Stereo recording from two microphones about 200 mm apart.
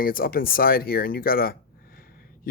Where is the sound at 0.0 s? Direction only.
45° left (ahead or behind).